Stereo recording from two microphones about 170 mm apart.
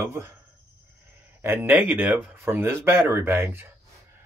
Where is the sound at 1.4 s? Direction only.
15° right (ahead or behind).